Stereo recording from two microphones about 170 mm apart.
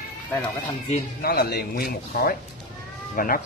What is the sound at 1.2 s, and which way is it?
Speech, 65° left (ahead or behind).